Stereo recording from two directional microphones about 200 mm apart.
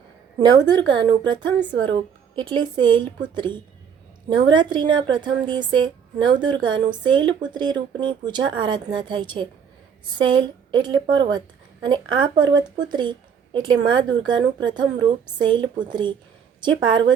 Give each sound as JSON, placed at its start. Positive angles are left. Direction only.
{"t": 0.3, "sound": "a woman's voice", "side_deg": -20}